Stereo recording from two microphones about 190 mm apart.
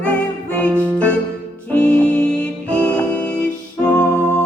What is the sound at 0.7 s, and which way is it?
Music, 10° right (ahead or behind).